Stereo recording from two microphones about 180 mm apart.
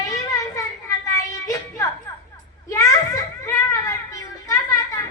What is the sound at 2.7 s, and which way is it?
Children playing, 15° left (ahead or behind).